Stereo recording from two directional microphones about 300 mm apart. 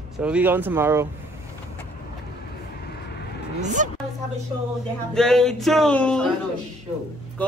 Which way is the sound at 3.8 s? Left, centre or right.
Right.